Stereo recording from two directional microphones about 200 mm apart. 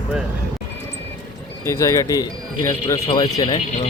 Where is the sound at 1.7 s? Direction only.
15° left (ahead or behind).